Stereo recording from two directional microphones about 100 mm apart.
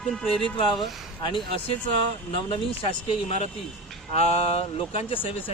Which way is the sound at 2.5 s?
80° left.